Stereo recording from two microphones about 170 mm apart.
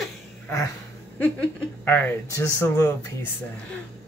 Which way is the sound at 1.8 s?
10° left (ahead or behind).